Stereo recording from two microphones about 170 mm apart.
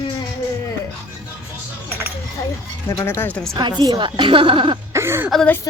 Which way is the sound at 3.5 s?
25° right (ahead or behind).